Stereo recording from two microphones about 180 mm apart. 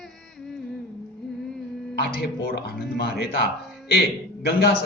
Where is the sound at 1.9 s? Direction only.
60° left (ahead or behind).